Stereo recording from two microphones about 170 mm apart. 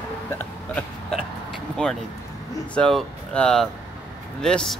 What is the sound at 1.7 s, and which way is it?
Speech, 5° left (ahead or behind).